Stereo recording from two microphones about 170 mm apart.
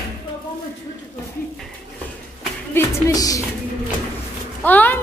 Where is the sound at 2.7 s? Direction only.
20° left (ahead or behind).